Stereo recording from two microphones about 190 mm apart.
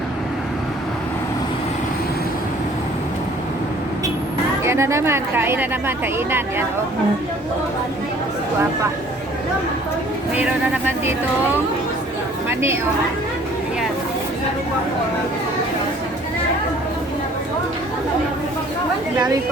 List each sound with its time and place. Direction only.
4.6 s a woman's voice: 15° right (ahead or behind)
10.3 s a woman's voice: 10° right (ahead or behind)
12.5 s a woman's voice: 15° right (ahead or behind)